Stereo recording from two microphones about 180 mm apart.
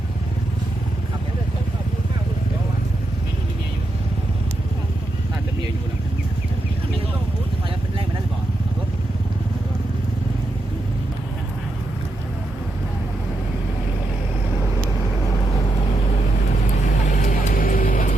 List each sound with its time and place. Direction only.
17.1 s vehicle: 45° left (ahead or behind)